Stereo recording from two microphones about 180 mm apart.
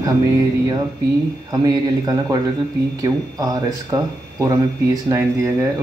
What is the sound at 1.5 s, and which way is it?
A man's voice, 20° right (ahead or behind).